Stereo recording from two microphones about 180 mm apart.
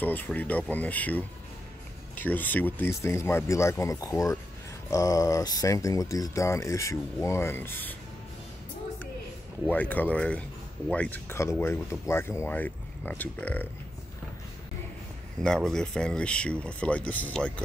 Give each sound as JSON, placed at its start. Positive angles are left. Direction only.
{"t": 0.0, "sound": "speech", "side_deg": 10}
{"t": 9.7, "sound": "speech", "side_deg": 10}
{"t": 15.4, "sound": "speech", "side_deg": 5}